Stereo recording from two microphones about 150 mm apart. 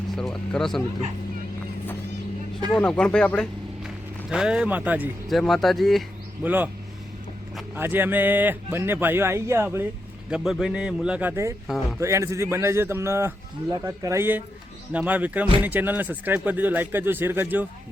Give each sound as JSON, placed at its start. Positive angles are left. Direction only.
{"t": 0.2, "sound": "a man's voice", "side_deg": 5}
{"t": 2.7, "sound": "speech", "side_deg": 5}
{"t": 3.8, "sound": "a man's voice", "side_deg": -5}
{"t": 5.3, "sound": "a man's voice", "side_deg": 0}
{"t": 6.4, "sound": "a man's voice", "side_deg": -10}
{"t": 7.8, "sound": "a man's voice", "side_deg": -15}
{"t": 10.2, "sound": "a man's voice", "side_deg": -5}